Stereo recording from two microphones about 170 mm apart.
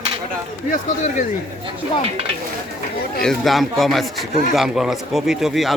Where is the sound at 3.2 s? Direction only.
Centre (ahead or behind).